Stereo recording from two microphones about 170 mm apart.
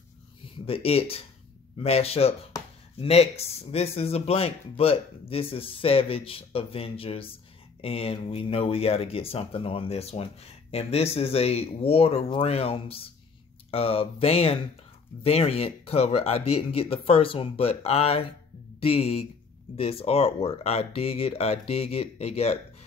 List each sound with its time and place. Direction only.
0.7 s speech: 35° left (ahead or behind)